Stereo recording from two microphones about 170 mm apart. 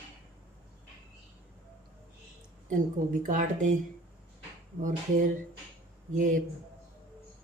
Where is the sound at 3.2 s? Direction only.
50° right (ahead or behind).